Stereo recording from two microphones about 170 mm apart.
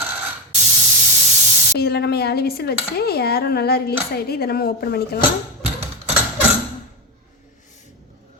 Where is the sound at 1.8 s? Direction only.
70° left (ahead or behind).